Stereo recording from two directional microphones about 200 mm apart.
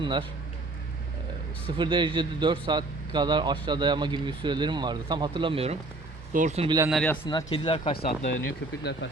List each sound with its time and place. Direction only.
0.0 s speech: 25° right (ahead or behind)
1.6 s speech: 25° right (ahead or behind)
6.7 s speech: 15° right (ahead or behind)
6.9 s speech: 5° left (ahead or behind)
7.3 s speech: 20° left (ahead or behind)
8.8 s speech: 60° left (ahead or behind)